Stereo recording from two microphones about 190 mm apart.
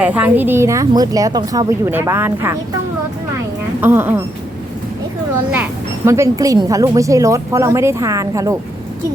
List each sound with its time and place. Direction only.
0.0 s a woman's voice: 10° right (ahead or behind)
3.8 s a woman's voice: 10° right (ahead or behind)
6.1 s a woman's voice: 15° right (ahead or behind)